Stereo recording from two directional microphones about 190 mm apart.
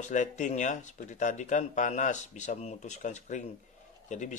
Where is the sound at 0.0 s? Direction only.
40° left (ahead or behind).